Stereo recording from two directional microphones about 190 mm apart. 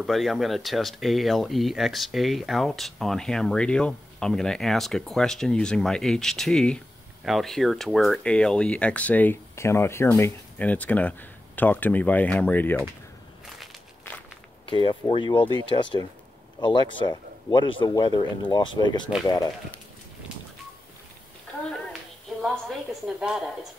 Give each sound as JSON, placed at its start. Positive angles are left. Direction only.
{"t": 0.0, "sound": "speech", "side_deg": 0}
{"t": 14.7, "sound": "speech", "side_deg": 25}
{"t": 22.4, "sound": "speech", "side_deg": 0}